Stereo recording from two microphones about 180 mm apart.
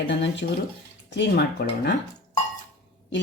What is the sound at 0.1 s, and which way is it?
Speech, 80° left.